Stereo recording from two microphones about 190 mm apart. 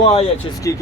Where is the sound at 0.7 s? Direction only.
15° left (ahead or behind).